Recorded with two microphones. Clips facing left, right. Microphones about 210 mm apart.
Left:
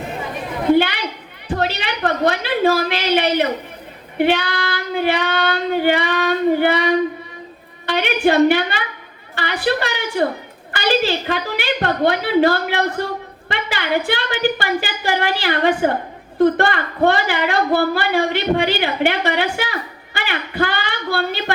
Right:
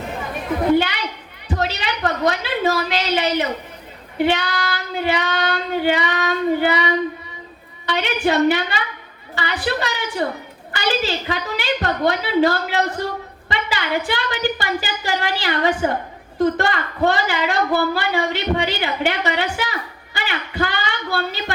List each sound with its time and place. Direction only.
1.5 s a sound: 60° left (ahead or behind)
4.2 s child singing: 60° left (ahead or behind)
9.3 s a woman's voice: 60° left (ahead or behind)
10.7 s child singing: 60° left (ahead or behind)